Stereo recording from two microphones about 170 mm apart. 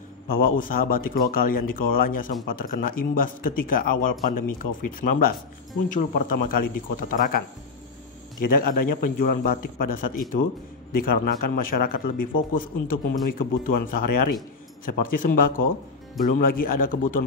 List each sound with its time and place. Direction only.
0.3 s speech: 55° left (ahead or behind)
8.5 s speech: 60° left (ahead or behind)